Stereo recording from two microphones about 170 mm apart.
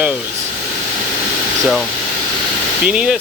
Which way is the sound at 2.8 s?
5° right (ahead or behind).